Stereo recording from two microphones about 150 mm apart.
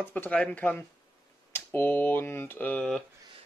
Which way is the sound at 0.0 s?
10° left (ahead or behind).